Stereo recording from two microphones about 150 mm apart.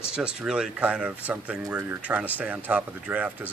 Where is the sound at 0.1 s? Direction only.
5° right (ahead or behind).